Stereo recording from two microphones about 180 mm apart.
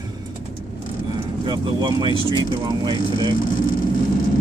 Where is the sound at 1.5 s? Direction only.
20° right (ahead or behind).